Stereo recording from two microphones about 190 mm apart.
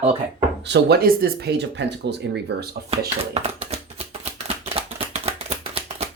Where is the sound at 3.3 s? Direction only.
35° right (ahead or behind).